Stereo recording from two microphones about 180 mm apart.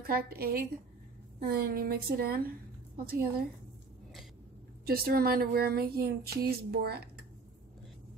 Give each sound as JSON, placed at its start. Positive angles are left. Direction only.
{"t": 0.0, "sound": "speech", "side_deg": -55}
{"t": 4.8, "sound": "speech", "side_deg": -60}